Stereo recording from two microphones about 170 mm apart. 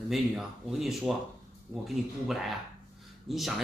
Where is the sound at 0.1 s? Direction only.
Centre (ahead or behind).